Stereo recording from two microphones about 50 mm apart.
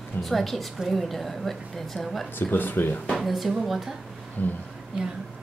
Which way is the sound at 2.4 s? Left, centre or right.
Left.